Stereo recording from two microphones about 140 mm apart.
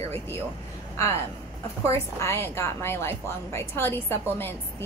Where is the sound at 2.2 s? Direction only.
20° left (ahead or behind).